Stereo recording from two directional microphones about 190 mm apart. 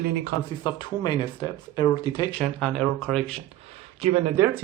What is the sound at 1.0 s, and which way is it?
Speech, 25° left (ahead or behind).